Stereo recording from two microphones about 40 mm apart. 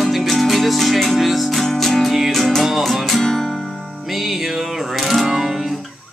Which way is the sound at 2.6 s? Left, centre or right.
Centre.